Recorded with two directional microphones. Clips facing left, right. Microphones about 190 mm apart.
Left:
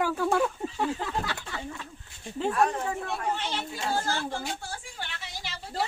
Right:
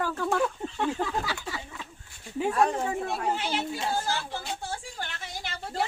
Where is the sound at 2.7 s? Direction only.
30° right (ahead or behind).